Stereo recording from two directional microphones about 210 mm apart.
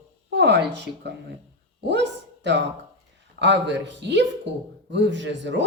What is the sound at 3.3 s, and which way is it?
Speech, 55° right (ahead or behind).